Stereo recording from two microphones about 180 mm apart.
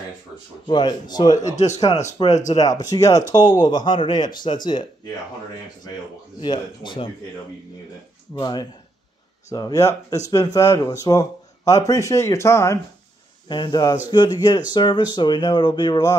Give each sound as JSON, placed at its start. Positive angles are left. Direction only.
{"t": 0.7, "sound": "speech", "side_deg": 25}
{"t": 1.3, "sound": "a man's voice", "side_deg": 40}
{"t": 2.5, "sound": "speech", "side_deg": 20}
{"t": 6.4, "sound": "speech", "side_deg": 25}
{"t": 8.4, "sound": "speech", "side_deg": 20}